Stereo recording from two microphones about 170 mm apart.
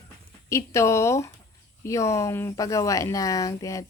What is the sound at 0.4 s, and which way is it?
Speech, 15° left (ahead or behind).